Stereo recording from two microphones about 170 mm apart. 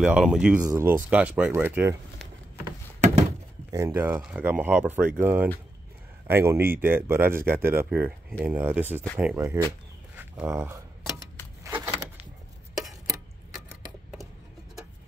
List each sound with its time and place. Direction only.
0.0 s speech: 5° right (ahead or behind)
3.0 s thunk: 45° right (ahead or behind)
3.7 s speech: 15° right (ahead or behind)
11.6 s a sound: 15° right (ahead or behind)